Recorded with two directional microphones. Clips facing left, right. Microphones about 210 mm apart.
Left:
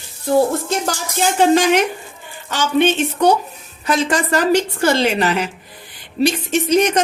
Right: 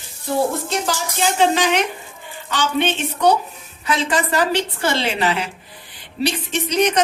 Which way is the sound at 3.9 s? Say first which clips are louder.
Left 3 dB; 45° left (ahead or behind).